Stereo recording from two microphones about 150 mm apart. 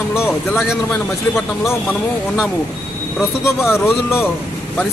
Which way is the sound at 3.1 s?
15° left (ahead or behind).